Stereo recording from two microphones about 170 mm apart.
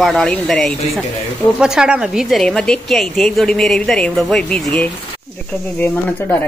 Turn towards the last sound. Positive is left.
turn(degrees=10)  # may be behind; listen again after turning